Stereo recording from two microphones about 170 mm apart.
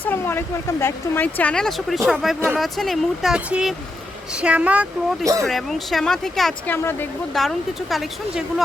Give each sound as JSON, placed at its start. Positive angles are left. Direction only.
{"t": 0.0, "sound": "a woman's voice", "side_deg": 15}
{"t": 5.2, "sound": "speech", "side_deg": -20}
{"t": 5.5, "sound": "speech", "side_deg": 0}